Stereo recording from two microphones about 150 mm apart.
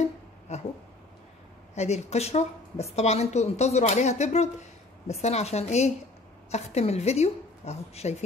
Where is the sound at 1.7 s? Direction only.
45° left (ahead or behind).